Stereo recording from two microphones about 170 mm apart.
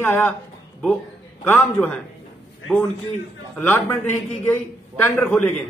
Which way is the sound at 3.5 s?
10° left (ahead or behind).